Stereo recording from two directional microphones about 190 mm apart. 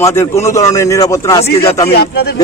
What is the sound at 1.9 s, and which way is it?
Speech, 55° left (ahead or behind).